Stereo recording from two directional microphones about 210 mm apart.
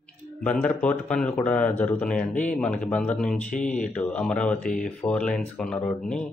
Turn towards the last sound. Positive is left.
turn(degrees=5)  # may be behind; listen again after turning